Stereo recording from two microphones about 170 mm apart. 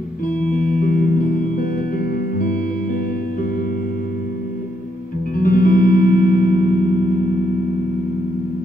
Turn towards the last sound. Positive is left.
turn(degrees=55)  # may be behind; listen again after turning